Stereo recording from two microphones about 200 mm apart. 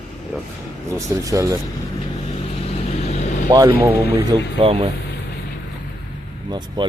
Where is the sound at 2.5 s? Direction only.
30° left (ahead or behind).